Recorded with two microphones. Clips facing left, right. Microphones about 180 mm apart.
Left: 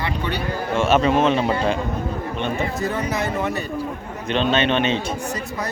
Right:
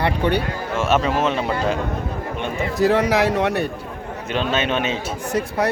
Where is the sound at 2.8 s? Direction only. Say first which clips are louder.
Right 11 dB; 90° right; by 3.7 s 70° right (ahead or behind).